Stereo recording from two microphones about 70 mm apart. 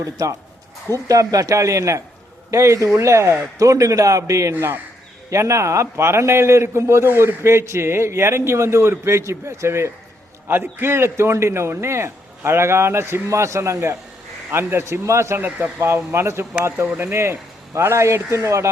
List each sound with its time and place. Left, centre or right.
0.0 s speech: right
4.5 s a man's voice: right
5.3 s a man's voice: right
10.5 s a man's voice: right
15.4 s speech: right
16.1 s a man's voice: right